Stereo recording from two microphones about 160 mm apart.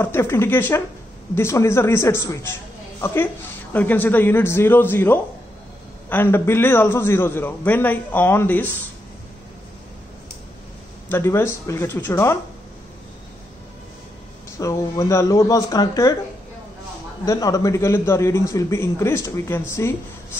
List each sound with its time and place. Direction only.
0.0 s a man's voice: 15° left (ahead or behind)
3.7 s a man's voice: 10° left (ahead or behind)
11.1 s a man's voice: 15° left (ahead or behind)
14.6 s speech: 20° left (ahead or behind)
17.2 s a man's voice: 20° left (ahead or behind)